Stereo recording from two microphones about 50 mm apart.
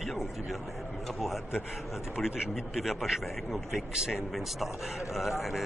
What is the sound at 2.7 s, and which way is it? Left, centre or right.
Speech, centre.